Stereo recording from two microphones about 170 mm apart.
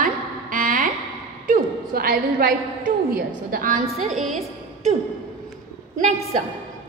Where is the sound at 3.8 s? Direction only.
45° right (ahead or behind).